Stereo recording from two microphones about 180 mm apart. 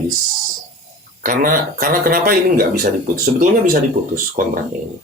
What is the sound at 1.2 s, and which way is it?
Speech, 50° right (ahead or behind).